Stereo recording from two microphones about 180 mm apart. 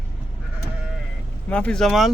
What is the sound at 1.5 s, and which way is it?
Speech, 5° left (ahead or behind).